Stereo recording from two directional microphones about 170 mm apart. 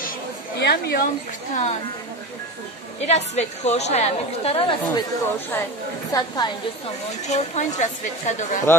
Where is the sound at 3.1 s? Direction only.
40° left (ahead or behind).